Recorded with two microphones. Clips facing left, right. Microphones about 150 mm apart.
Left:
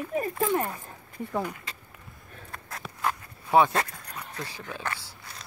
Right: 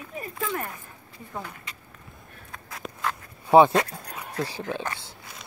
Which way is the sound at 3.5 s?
30° right (ahead or behind).